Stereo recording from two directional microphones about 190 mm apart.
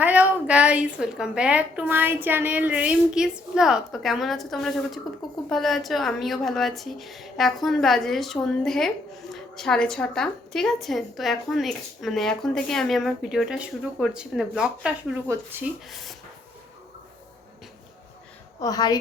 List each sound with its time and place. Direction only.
0.0 s a woman's voice: 10° right (ahead or behind)
18.6 s a woman's voice: 20° left (ahead or behind)